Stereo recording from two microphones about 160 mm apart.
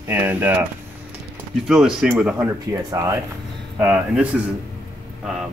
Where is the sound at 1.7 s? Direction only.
Centre (ahead or behind).